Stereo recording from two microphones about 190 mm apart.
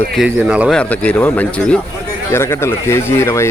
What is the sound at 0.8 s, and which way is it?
A man's voice, 10° left (ahead or behind).